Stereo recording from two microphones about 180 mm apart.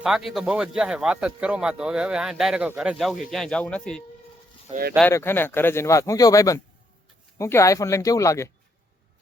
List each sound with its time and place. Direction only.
0.0 s a man's voice: centre (ahead or behind)
5.1 s speech: 10° left (ahead or behind)